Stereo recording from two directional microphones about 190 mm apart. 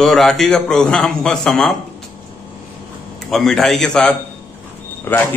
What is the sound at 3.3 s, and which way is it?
A man's voice, centre (ahead or behind).